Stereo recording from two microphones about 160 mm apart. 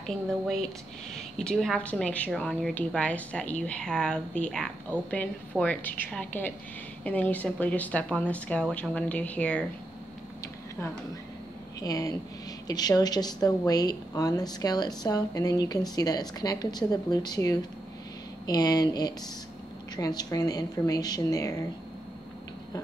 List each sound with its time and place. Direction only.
0.0 s a woman's voice: 5° left (ahead or behind)
11.8 s a woman's voice: 20° left (ahead or behind)